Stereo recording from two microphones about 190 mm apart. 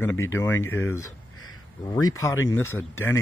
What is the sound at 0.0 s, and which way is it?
Speech, 10° left (ahead or behind).